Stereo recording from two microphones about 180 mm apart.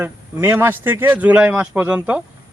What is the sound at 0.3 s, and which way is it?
A man's voice, 15° right (ahead or behind).